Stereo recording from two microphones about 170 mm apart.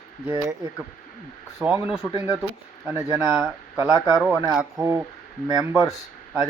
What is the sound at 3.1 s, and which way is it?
Speech, 10° right (ahead or behind).